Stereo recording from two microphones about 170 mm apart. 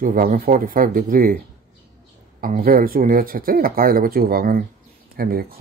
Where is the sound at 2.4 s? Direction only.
55° right (ahead or behind).